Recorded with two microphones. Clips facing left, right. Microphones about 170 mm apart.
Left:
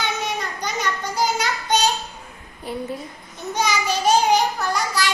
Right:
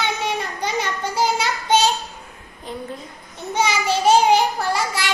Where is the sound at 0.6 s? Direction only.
30° right (ahead or behind).